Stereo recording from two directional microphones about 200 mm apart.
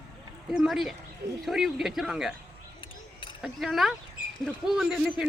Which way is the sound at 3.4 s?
Centre (ahead or behind).